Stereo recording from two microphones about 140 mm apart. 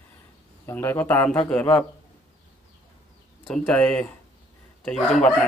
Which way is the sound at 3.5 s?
5° left (ahead or behind).